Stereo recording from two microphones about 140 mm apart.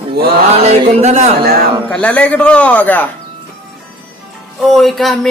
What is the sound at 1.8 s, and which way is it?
A man's voice, 10° left (ahead or behind).